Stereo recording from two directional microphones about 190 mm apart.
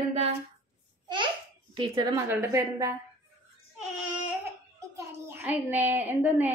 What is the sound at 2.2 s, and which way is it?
Speech, 15° right (ahead or behind).